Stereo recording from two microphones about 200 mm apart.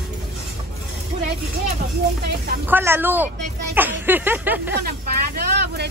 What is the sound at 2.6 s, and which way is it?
Speech, 10° right (ahead or behind).